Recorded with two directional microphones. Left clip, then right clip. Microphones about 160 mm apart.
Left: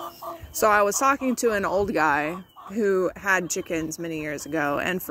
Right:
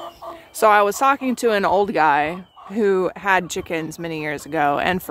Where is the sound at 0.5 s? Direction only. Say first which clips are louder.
Right 5 dB; 10° right (ahead or behind).